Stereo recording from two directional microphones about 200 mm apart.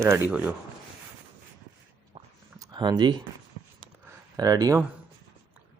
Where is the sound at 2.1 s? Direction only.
20° right (ahead or behind).